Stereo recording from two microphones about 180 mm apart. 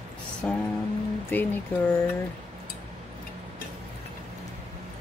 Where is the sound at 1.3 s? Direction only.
10° left (ahead or behind).